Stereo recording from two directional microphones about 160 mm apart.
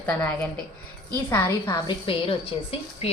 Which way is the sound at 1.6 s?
30° left (ahead or behind).